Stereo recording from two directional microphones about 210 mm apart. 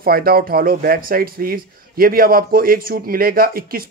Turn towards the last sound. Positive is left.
turn(degrees=-45)  # may be behind; listen again after turning